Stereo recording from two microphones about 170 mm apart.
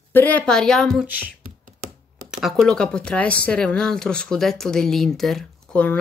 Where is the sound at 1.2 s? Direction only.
55° right (ahead or behind).